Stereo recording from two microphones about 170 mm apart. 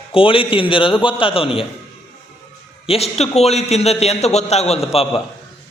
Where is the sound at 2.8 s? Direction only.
35° left (ahead or behind).